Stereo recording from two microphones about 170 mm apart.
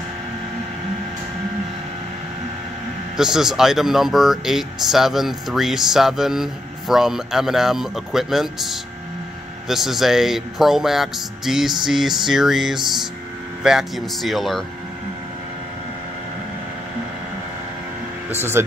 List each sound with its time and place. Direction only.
3.2 s speech: 5° right (ahead or behind)